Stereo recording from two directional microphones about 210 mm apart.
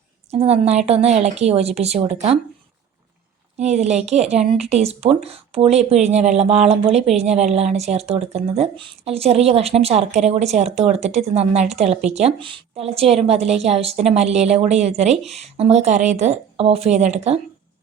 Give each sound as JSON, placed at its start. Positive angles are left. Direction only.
{"t": 0.3, "sound": "speech", "side_deg": -30}
{"t": 3.6, "sound": "a woman's voice", "side_deg": -30}